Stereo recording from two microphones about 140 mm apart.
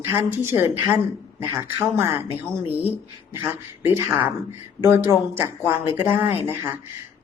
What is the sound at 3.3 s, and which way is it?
A woman's voice, 15° right (ahead or behind).